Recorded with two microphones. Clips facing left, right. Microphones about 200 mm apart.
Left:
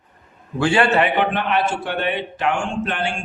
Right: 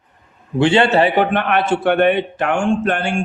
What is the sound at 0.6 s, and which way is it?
Speech, 25° right (ahead or behind).